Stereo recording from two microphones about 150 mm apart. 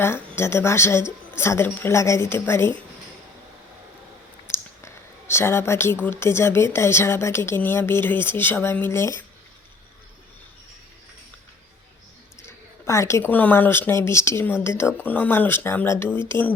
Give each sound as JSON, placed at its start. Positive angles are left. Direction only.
{"t": 0.0, "sound": "speech", "side_deg": 15}
{"t": 4.5, "sound": "speech", "side_deg": 20}
{"t": 12.4, "sound": "speech", "side_deg": 20}